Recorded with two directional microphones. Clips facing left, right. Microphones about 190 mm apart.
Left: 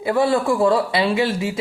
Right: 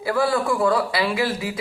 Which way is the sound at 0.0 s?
25° left (ahead or behind).